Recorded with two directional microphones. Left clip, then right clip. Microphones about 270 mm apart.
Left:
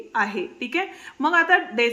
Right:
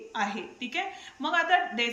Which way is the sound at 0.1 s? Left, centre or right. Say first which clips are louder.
Left 7 dB; centre.